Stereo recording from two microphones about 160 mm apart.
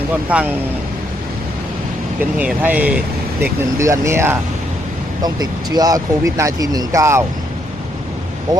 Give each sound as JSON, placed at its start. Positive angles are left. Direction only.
{"t": 0.3, "sound": "speech", "side_deg": -10}
{"t": 2.4, "sound": "speech", "side_deg": -10}